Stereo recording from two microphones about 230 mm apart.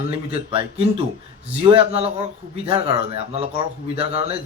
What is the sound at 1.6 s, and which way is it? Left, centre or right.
Speech, right.